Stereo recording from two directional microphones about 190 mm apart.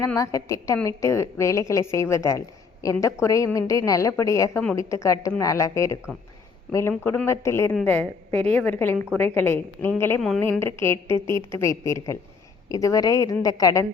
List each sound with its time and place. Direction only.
0.0 s a woman's voice: 15° left (ahead or behind)
10.2 s a woman's voice: centre (ahead or behind)
10.8 s a woman's voice: 15° left (ahead or behind)